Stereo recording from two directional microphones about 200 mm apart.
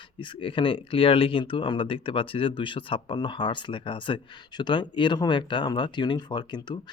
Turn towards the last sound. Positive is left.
turn(degrees=20)  # may be behind; listen again after turning